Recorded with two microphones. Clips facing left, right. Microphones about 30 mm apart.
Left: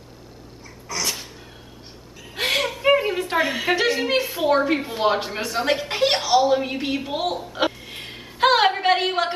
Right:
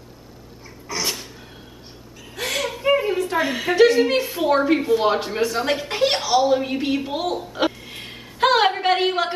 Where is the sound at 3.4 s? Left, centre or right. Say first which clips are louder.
Right 5 dB; centre.